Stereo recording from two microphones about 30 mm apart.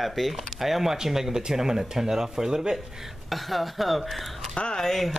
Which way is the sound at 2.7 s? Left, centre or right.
Centre.